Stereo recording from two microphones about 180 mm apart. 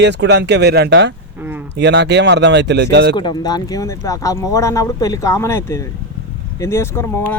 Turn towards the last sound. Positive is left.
turn(degrees=15)  # may be behind; listen again after turning